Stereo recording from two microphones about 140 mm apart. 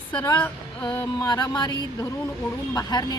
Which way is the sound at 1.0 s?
30° left (ahead or behind).